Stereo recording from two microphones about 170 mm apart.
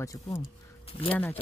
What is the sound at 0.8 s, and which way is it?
Speech, 35° left (ahead or behind).